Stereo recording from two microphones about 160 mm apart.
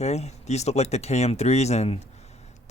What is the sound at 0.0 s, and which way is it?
Speech, 45° left (ahead or behind).